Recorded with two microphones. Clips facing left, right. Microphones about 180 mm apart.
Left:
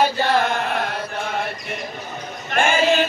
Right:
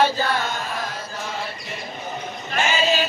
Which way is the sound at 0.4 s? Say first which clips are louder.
Left 6 dB; 60° left (ahead or behind).